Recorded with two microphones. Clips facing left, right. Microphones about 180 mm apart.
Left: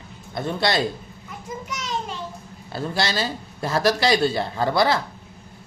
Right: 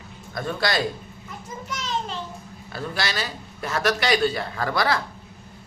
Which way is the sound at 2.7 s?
30° left (ahead or behind).